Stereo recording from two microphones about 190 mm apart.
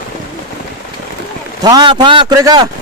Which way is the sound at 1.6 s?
20° right (ahead or behind).